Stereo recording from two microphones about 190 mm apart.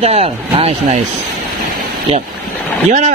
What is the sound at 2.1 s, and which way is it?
Speech, 35° right (ahead or behind).